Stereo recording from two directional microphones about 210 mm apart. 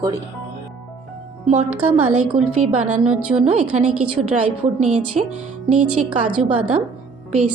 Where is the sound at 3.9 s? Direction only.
90° right.